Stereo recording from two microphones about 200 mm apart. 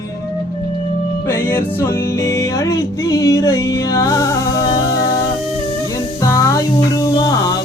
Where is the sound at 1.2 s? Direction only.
10° left (ahead or behind).